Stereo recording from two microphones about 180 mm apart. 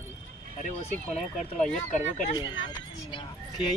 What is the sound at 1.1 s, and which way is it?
Speech, 40° left (ahead or behind).